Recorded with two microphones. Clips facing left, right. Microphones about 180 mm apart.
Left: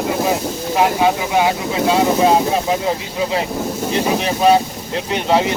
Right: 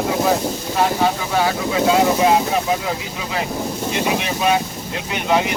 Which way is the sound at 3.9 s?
35° left (ahead or behind).